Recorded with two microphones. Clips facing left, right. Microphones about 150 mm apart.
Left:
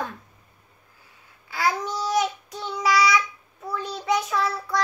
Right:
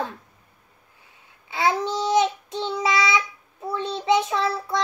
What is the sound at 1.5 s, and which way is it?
Child singing, 25° right (ahead or behind).